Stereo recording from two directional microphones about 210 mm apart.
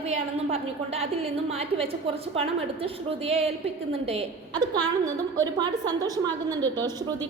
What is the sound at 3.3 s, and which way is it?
A woman's voice, 30° right (ahead or behind).